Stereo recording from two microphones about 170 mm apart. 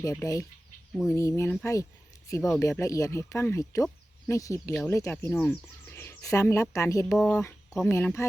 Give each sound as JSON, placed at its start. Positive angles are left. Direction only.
{"t": 0.0, "sound": "speech", "side_deg": 20}
{"t": 7.3, "sound": "a sound", "side_deg": 15}
{"t": 7.9, "sound": "speech", "side_deg": 15}